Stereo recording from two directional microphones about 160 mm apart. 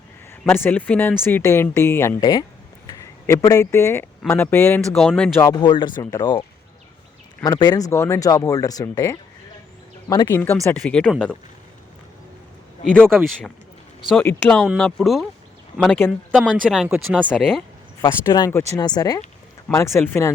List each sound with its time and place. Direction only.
0.4 s speech: 10° left (ahead or behind)
4.9 s speech: 5° left (ahead or behind)
5.5 s speech: 30° left (ahead or behind)
7.4 s speech: 25° left (ahead or behind); by 11.1 s 10° left (ahead or behind)
11.1 s speech: 5° right (ahead or behind)
12.8 s speech: 5° left (ahead or behind)
14.8 s speech: centre (ahead or behind)
16.0 s speech: 15° left (ahead or behind)
16.5 s speech: centre (ahead or behind)
18.0 s speech: 25° left (ahead or behind)